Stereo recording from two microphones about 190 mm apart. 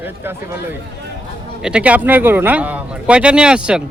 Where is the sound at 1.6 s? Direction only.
5° right (ahead or behind).